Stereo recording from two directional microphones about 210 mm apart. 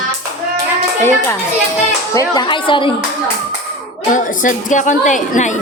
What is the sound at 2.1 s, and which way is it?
Speech, 20° left (ahead or behind).